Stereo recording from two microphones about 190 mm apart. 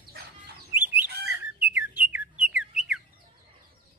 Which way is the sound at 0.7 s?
10° right (ahead or behind).